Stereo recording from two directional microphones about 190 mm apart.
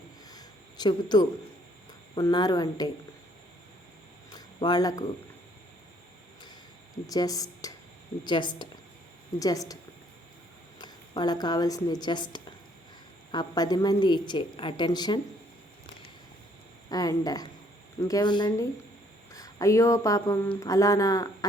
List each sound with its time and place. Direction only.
0.3 s a sound: 20° left (ahead or behind)
2.1 s a woman's voice: 20° left (ahead or behind)
4.3 s a sound: 20° left (ahead or behind)
7.1 s a woman's voice: 20° left (ahead or behind)
10.8 s a woman's voice: 20° left (ahead or behind)
16.9 s a woman's voice: 20° left (ahead or behind)